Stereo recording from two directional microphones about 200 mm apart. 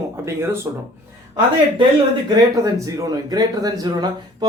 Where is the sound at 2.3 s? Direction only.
15° right (ahead or behind).